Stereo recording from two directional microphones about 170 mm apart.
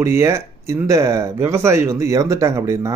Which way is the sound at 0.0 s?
15° right (ahead or behind).